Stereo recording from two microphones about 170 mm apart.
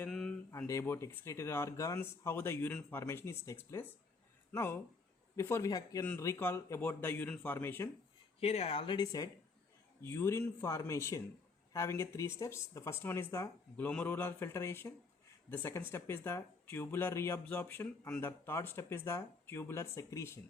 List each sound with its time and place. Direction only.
0.1 s a sound: 5° left (ahead or behind)
0.5 s speech: 15° left (ahead or behind)
8.4 s speech: 35° left (ahead or behind); by 20.4 s 15° left (ahead or behind)